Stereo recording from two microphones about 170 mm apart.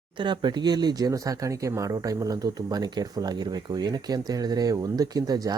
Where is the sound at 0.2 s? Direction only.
25° right (ahead or behind).